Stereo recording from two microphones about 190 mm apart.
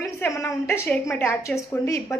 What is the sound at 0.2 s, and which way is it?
A woman's voice, 15° left (ahead or behind).